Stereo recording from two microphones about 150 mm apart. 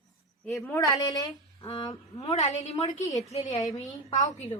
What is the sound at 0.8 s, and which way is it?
Speech, 25° left (ahead or behind).